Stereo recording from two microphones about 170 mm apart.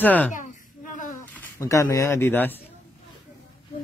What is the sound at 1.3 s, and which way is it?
Speech, 15° left (ahead or behind).